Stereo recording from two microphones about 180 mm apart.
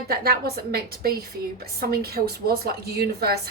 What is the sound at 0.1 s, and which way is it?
A woman's voice, 60° right (ahead or behind).